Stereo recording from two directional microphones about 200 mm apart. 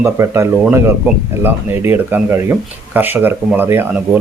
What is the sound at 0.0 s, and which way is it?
Speech, 15° right (ahead or behind).